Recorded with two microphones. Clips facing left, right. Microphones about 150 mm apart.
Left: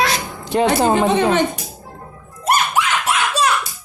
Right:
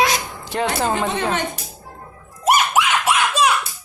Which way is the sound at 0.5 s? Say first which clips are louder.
Left 6 dB; 20° left (ahead or behind).